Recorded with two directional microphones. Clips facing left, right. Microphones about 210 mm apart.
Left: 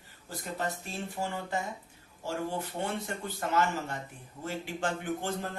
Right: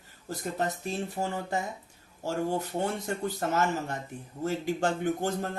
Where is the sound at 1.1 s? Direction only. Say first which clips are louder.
Right 3 dB; 40° right (ahead or behind).